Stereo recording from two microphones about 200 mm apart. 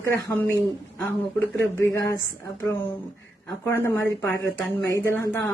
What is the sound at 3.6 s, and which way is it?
Speech, 10° left (ahead or behind).